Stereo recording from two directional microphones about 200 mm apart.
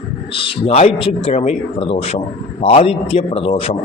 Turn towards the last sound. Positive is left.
turn(degrees=30)  # may be behind; listen again after turning